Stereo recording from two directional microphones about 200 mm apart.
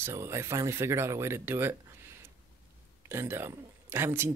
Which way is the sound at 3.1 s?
10° right (ahead or behind).